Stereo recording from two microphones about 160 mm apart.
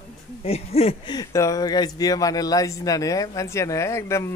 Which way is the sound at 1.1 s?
20° left (ahead or behind).